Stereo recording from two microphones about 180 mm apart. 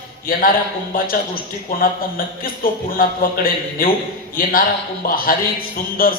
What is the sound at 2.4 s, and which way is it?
A man's voice, 55° left (ahead or behind).